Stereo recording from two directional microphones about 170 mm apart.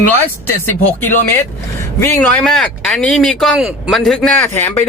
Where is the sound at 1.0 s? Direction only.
10° left (ahead or behind).